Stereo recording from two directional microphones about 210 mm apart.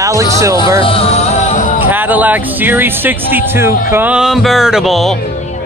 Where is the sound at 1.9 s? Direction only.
10° right (ahead or behind).